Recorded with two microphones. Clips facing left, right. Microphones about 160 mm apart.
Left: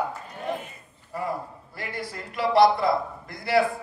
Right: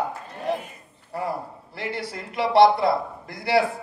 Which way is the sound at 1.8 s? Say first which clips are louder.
Right 4 dB; 75° right (ahead or behind).